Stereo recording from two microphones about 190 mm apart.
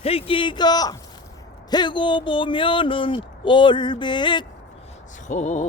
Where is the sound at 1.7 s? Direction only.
25° left (ahead or behind).